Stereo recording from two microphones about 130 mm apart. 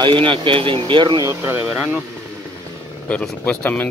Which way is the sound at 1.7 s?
5° right (ahead or behind).